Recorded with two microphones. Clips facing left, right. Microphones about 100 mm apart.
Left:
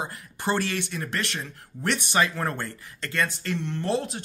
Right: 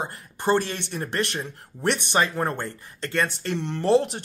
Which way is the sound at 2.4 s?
20° right (ahead or behind).